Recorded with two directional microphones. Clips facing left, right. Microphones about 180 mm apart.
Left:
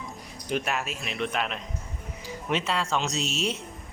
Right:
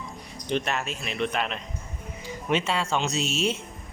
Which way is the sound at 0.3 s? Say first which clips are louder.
Right 1 dB; 5° left (ahead or behind).